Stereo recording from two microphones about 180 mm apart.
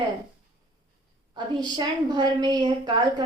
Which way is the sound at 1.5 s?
25° right (ahead or behind).